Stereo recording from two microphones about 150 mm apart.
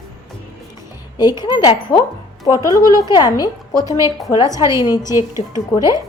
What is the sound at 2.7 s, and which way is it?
A woman's voice, 25° left (ahead or behind).